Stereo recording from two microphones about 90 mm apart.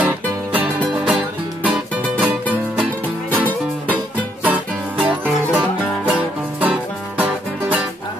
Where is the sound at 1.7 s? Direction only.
20° right (ahead or behind).